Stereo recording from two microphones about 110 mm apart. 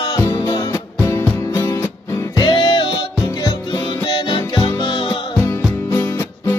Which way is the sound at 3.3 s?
35° left (ahead or behind).